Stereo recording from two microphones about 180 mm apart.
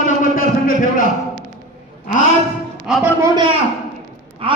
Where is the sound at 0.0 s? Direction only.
50° left (ahead or behind).